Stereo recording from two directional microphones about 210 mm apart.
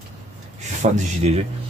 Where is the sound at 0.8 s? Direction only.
30° right (ahead or behind).